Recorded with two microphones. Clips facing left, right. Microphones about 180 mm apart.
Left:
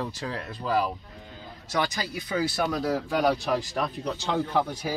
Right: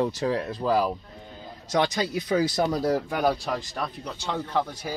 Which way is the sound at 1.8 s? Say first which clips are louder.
Right 4 dB; 25° right (ahead or behind).